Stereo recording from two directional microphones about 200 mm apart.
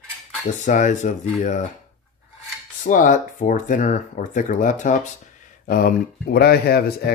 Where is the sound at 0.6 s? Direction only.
35° left (ahead or behind).